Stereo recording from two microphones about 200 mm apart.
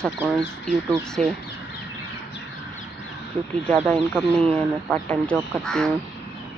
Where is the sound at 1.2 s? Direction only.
35° right (ahead or behind).